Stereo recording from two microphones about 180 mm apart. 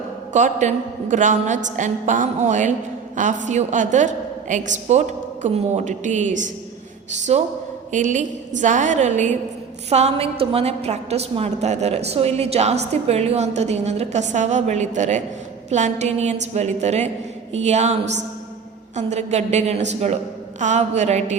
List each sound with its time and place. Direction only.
0.3 s a woman's voice: 45° right (ahead or behind)
18.9 s a woman's voice: 40° right (ahead or behind)